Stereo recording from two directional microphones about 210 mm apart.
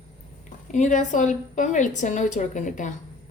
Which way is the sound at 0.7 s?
35° left (ahead or behind).